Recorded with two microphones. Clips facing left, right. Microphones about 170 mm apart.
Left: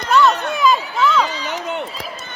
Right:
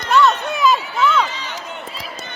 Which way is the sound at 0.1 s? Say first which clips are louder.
Even; centre (ahead or behind).